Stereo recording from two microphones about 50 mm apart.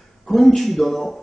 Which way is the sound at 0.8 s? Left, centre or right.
Left.